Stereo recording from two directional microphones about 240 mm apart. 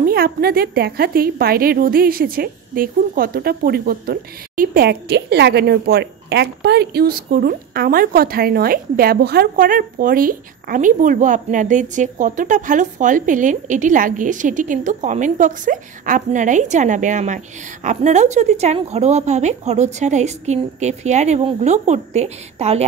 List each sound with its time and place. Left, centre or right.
0.0 s a woman's voice: right